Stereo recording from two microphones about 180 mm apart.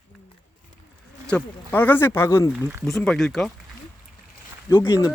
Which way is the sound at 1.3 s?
10° left (ahead or behind).